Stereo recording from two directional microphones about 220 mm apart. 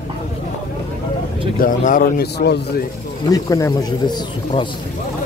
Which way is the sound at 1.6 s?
40° left (ahead or behind).